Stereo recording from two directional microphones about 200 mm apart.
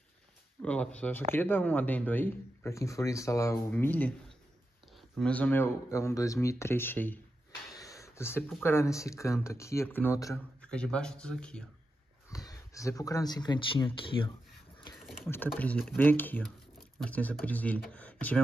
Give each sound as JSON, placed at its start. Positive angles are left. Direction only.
{"t": 0.6, "sound": "speech", "side_deg": 5}
{"t": 12.3, "sound": "speech", "side_deg": 15}
{"t": 15.2, "sound": "speech", "side_deg": 10}